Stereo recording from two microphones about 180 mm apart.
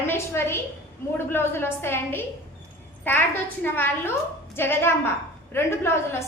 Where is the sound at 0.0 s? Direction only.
15° left (ahead or behind).